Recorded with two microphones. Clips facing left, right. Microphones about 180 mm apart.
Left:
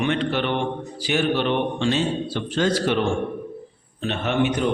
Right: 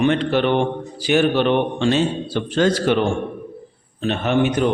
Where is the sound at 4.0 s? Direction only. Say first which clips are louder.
Right 4 dB; 45° right (ahead or behind).